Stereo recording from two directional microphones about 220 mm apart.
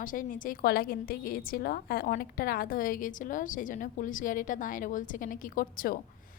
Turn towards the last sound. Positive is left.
turn(degrees=40)  # may be behind; listen again after turning